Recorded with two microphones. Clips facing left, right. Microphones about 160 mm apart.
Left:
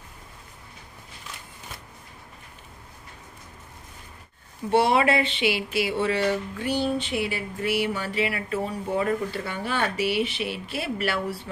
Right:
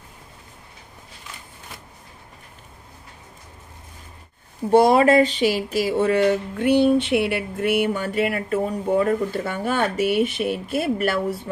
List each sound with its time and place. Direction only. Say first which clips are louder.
4.6 s speech: right 6 dB; 40° right (ahead or behind)